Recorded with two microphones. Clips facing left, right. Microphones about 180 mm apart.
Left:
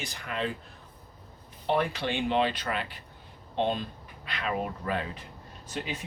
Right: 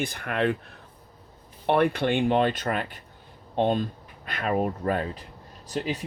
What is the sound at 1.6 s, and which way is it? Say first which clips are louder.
Speech: right 6 dB; 60° right (ahead or behind).